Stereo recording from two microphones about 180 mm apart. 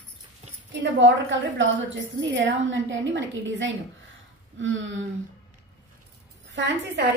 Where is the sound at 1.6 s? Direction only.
90° right.